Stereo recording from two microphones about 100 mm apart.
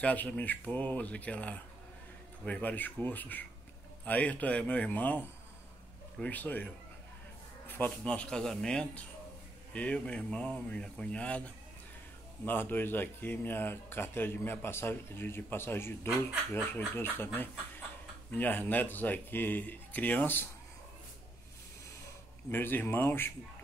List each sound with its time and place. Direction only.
0.0 s speech: 15° left (ahead or behind)
22.5 s speech: 20° left (ahead or behind)